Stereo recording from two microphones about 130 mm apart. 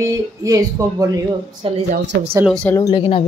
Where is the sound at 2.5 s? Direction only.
10° left (ahead or behind).